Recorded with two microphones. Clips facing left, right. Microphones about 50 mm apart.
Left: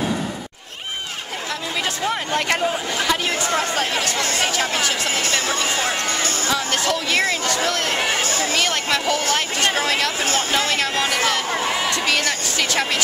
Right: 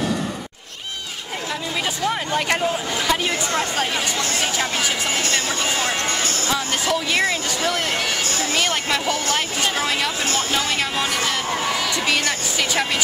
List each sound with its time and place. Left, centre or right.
2.6 s speech: centre
6.5 s speech: centre
10.2 s speech: centre
10.6 s speech: centre
11.5 s speech: centre
12.1 s speech: centre